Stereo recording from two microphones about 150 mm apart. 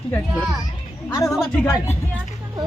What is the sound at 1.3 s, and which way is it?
Speech, 5° left (ahead or behind).